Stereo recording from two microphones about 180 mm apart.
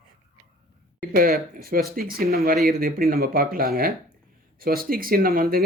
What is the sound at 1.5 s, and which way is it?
Speech, 55° right (ahead or behind).